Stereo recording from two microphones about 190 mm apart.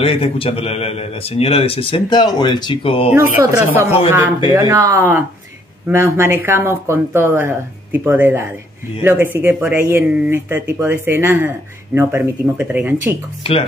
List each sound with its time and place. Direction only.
0.0 s a man's voice: 30° left (ahead or behind)
3.1 s speech: 10° right (ahead or behind)
13.4 s speech: 30° left (ahead or behind)